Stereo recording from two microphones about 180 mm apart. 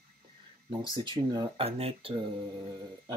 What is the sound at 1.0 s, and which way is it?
Speech, 25° right (ahead or behind).